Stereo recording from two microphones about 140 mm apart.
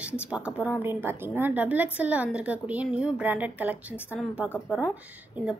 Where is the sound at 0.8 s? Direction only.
15° right (ahead or behind).